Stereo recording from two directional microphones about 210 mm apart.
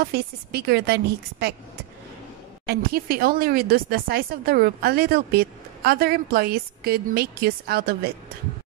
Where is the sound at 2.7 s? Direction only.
45° right (ahead or behind).